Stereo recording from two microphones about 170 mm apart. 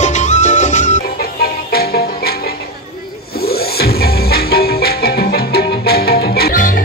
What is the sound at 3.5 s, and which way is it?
Music, 65° left (ahead or behind).